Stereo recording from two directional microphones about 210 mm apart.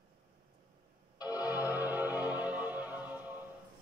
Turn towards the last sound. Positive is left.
turn(degrees=-10)  # may be behind; listen again after turning